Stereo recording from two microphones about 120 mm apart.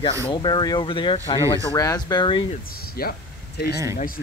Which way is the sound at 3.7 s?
25° right (ahead or behind).